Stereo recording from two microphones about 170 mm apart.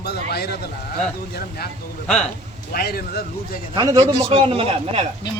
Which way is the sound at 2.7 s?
65° left (ahead or behind).